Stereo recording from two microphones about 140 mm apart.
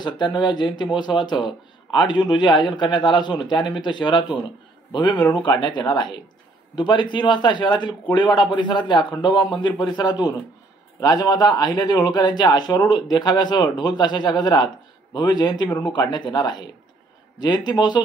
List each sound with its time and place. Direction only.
0.0 s speech: 35° left (ahead or behind)